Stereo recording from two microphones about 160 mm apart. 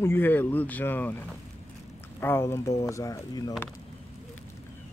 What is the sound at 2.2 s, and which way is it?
Speech, 15° left (ahead or behind).